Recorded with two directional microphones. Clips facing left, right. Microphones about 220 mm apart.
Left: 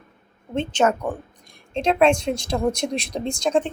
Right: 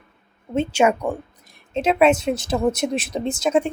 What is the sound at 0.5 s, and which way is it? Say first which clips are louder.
A woman's voice: right 2 dB; 10° right (ahead or behind).